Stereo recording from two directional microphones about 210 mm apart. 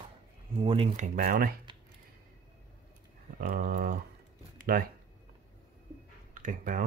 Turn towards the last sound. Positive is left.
turn(degrees=-40)  # may be behind; listen again after turning